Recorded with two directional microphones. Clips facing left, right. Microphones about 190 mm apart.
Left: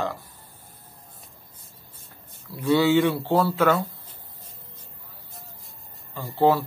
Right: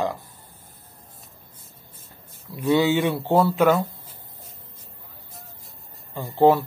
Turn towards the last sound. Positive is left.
turn(degrees=-20)  # may be behind; listen again after turning